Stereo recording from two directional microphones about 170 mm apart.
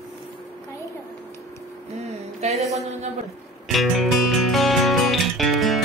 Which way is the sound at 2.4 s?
40° right (ahead or behind).